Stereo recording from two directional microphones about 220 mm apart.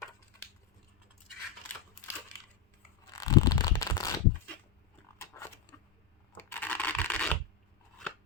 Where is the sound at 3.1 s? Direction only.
15° left (ahead or behind).